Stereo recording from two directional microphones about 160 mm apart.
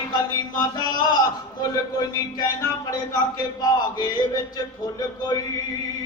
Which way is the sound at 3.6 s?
25° left (ahead or behind).